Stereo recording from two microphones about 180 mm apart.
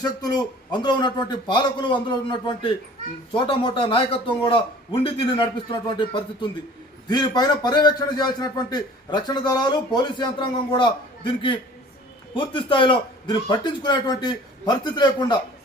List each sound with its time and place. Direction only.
0.0 s speech: 20° left (ahead or behind)
3.3 s speech: 30° left (ahead or behind)